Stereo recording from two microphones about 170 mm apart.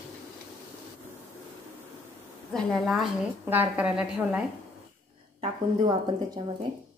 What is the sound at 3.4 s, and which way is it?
A woman's voice, 10° right (ahead or behind).